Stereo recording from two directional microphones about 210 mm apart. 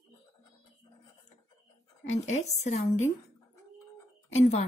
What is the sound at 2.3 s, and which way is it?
Speech, 30° left (ahead or behind).